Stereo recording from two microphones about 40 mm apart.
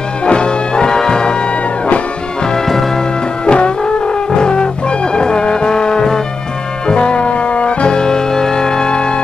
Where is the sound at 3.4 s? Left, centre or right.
Left.